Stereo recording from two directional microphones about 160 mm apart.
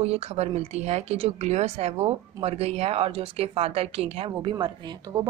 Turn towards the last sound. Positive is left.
turn(degrees=-15)  # may be behind; listen again after turning